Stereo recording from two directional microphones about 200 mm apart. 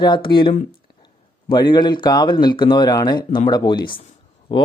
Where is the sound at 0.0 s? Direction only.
20° left (ahead or behind).